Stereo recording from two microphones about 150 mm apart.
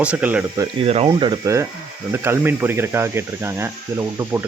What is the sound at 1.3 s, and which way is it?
Speech, 20° right (ahead or behind).